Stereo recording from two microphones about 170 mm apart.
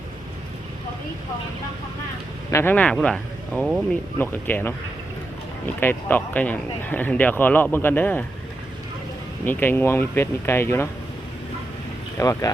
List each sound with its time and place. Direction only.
2.5 s speech: 15° left (ahead or behind); by 3.8 s 5° right (ahead or behind)
4.2 s speech: 10° left (ahead or behind)
5.8 s speech: 10° left (ahead or behind)
9.5 s speech: 10° left (ahead or behind)
12.1 s speech: 20° left (ahead or behind)